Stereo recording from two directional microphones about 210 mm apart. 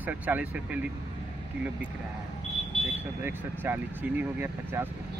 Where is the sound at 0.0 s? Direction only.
5° right (ahead or behind).